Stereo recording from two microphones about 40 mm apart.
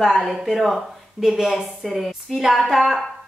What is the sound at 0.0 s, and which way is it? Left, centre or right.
A woman's voice, centre.